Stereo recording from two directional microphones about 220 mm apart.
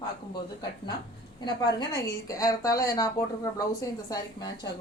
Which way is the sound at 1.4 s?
20° left (ahead or behind).